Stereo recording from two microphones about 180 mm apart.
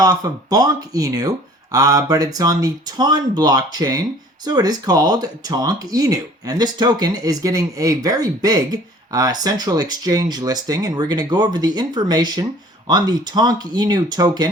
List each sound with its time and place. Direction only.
0.0 s speech: 20° right (ahead or behind)